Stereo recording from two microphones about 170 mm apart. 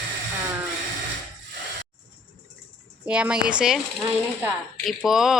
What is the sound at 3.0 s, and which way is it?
Music, 5° right (ahead or behind).